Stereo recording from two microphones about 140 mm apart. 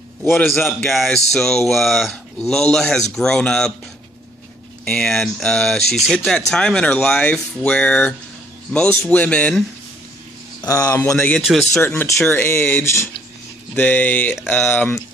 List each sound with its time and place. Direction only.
0.2 s speech: 15° left (ahead or behind)
0.7 s speech: centre (ahead or behind)
4.9 s speech: 5° left (ahead or behind)
10.7 s speech: 25° left (ahead or behind)
11.1 s speech: 5° left (ahead or behind)
11.7 s speech: 15° left (ahead or behind)